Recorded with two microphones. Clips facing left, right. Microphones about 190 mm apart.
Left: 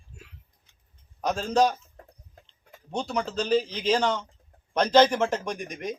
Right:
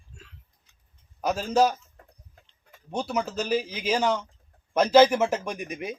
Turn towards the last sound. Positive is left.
turn(degrees=-5)  # may be behind; listen again after turning